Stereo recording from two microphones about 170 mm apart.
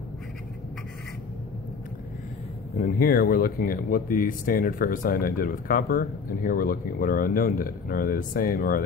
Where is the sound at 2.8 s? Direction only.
60° left (ahead or behind).